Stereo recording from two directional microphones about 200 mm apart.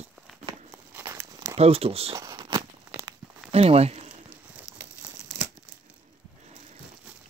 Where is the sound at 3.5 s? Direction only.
30° right (ahead or behind).